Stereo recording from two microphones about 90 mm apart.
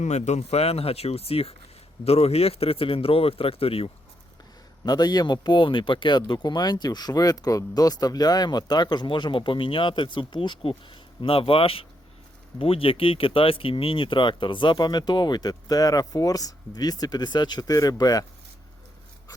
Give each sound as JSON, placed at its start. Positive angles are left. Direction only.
{"t": 0.7, "sound": "speech", "side_deg": 90}
{"t": 4.9, "sound": "speech", "side_deg": 50}